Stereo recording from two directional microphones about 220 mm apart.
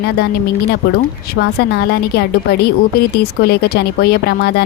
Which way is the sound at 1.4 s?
50° left (ahead or behind).